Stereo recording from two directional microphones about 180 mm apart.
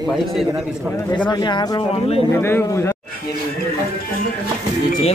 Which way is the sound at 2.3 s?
15° left (ahead or behind).